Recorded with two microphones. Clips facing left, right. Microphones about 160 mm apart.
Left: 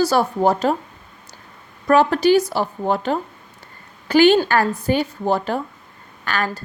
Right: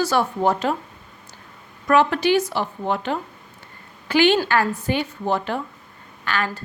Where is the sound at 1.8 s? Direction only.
35° left (ahead or behind).